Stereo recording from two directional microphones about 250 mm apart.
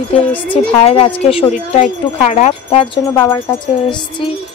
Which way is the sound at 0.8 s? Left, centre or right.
Left.